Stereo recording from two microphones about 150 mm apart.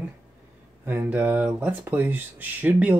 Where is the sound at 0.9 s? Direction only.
10° right (ahead or behind).